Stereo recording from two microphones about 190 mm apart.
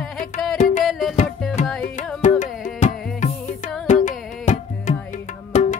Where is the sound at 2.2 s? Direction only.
45° left (ahead or behind).